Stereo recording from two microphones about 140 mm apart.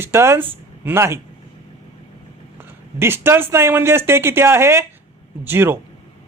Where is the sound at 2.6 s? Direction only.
15° right (ahead or behind).